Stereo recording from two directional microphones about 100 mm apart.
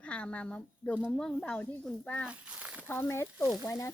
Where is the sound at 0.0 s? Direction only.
10° left (ahead or behind).